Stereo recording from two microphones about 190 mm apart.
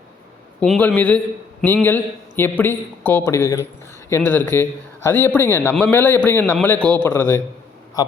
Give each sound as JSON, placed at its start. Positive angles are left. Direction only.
{"t": 0.6, "sound": "a man's voice", "side_deg": 5}